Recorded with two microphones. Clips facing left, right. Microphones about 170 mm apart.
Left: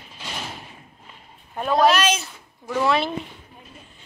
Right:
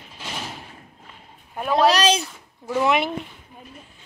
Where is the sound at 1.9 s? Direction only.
35° right (ahead or behind).